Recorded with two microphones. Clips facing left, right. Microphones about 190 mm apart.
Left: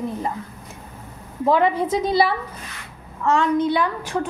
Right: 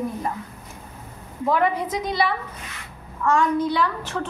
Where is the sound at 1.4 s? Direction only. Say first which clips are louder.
Left 3 dB; 25° left (ahead or behind).